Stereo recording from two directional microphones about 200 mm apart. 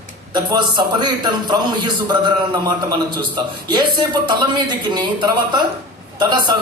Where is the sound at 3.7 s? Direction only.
20° right (ahead or behind).